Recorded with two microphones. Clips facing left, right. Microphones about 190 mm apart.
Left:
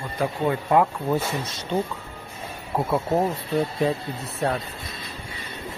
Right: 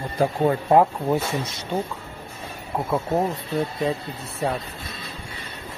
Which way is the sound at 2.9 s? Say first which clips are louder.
Even; centre (ahead or behind).